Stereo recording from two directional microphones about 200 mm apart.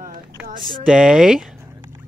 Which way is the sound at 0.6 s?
5° right (ahead or behind).